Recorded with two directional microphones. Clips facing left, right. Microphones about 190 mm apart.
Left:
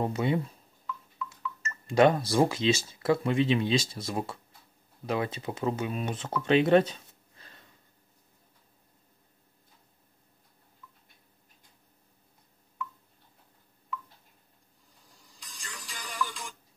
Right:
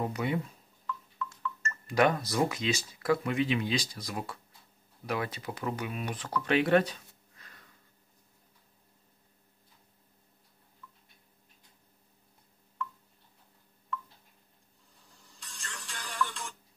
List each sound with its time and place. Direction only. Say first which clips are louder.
0.0 s speech: left 4 dB; 25° left (ahead or behind)
0.8 s music: right 1 dB; 10° left (ahead or behind)
1.9 s speech: left 4 dB; 30° left (ahead or behind)
15.4 s music: even; centre (ahead or behind)